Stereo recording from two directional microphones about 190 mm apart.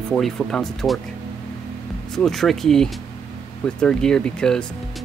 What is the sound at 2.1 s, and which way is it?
Speech, centre (ahead or behind).